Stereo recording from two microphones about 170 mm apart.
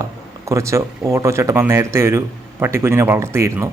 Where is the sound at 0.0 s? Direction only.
15° right (ahead or behind).